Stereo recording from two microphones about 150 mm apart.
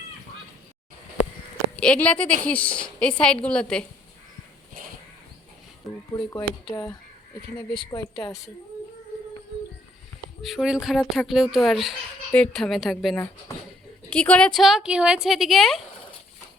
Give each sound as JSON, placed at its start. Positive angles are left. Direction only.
{"t": 1.7, "sound": "a woman's voice", "side_deg": 5}
{"t": 6.1, "sound": "a woman's voice", "side_deg": 30}
{"t": 10.4, "sound": "speech", "side_deg": 0}